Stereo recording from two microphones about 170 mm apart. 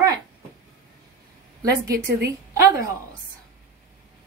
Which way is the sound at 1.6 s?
20° right (ahead or behind).